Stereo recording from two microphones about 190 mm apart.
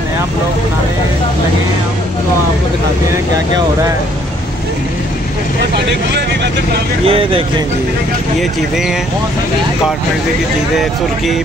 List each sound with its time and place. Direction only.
7.1 s speech: 30° right (ahead or behind)
8.4 s speech: centre (ahead or behind)